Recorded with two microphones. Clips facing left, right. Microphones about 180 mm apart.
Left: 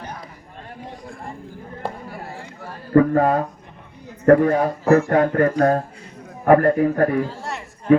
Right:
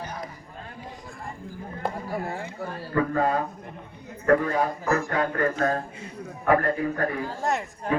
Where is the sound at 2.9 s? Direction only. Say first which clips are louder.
Left 11 dB; 40° left (ahead or behind).